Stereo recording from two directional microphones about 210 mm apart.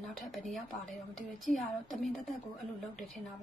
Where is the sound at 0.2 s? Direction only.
Centre (ahead or behind).